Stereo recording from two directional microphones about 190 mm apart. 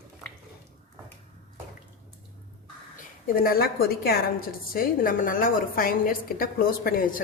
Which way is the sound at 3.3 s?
50° left (ahead or behind).